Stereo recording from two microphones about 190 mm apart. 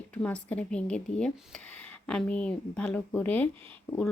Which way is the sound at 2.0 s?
5° left (ahead or behind).